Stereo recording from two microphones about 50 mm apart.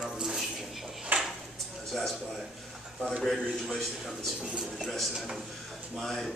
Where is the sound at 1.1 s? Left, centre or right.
Right.